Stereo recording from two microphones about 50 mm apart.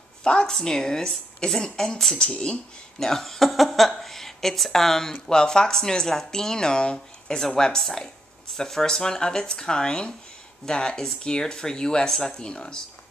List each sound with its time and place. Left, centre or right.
0.2 s a woman's voice: centre
3.0 s speech: centre